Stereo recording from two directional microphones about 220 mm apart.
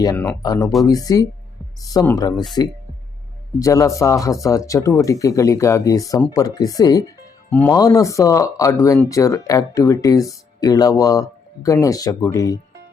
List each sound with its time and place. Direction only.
0.0 s speech: 15° left (ahead or behind)
3.6 s speech: 15° left (ahead or behind)